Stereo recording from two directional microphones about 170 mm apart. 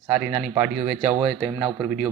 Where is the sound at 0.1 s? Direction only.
10° right (ahead or behind).